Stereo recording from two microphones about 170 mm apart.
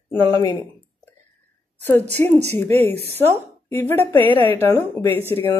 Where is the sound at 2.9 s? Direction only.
35° right (ahead or behind).